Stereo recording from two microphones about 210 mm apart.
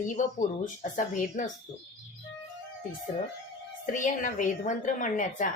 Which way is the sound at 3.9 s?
35° left (ahead or behind).